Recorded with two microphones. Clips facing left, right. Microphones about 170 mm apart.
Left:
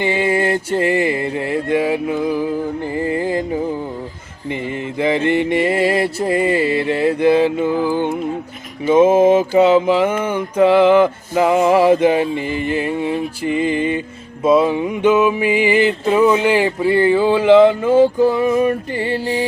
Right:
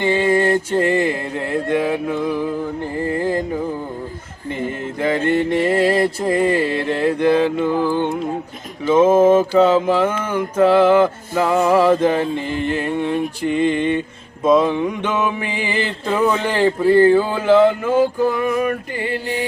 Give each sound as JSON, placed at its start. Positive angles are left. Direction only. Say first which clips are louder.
{"t": 0.0, "sound": "music", "louder": "right 1 dB", "side_deg": 10}
{"t": 4.9, "sound": "music", "louder": "left 2 dB", "side_deg": 15}